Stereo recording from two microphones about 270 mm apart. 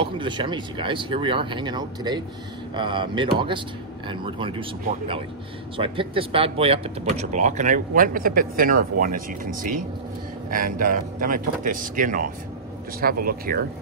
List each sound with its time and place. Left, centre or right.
0.0 s speech: centre; by 13.7 s right